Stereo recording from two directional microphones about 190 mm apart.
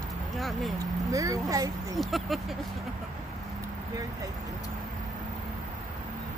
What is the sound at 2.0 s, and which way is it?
Speech, centre (ahead or behind).